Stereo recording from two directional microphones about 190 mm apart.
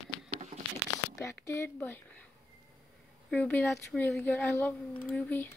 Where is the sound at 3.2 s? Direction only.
5° left (ahead or behind).